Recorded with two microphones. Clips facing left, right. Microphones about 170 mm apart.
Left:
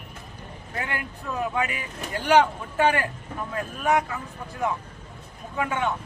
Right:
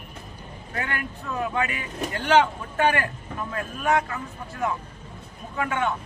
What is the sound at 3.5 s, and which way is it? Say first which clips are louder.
Speech: even; 15° left (ahead or behind).